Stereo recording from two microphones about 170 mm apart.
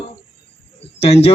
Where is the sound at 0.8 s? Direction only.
35° left (ahead or behind).